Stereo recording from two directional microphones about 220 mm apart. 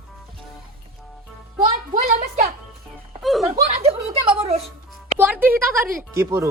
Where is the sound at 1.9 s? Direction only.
30° right (ahead or behind).